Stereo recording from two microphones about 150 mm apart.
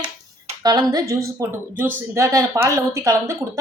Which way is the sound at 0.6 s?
25° right (ahead or behind).